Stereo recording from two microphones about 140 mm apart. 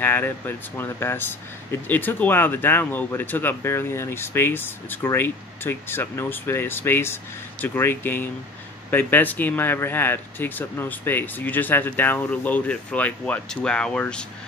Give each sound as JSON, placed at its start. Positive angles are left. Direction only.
{"t": 0.0, "sound": "speech", "side_deg": 15}